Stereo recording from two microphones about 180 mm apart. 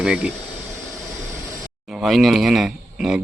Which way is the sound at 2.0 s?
Centre (ahead or behind).